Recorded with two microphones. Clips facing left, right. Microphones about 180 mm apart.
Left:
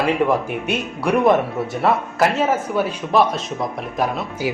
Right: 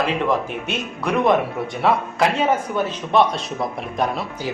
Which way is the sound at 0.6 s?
10° left (ahead or behind).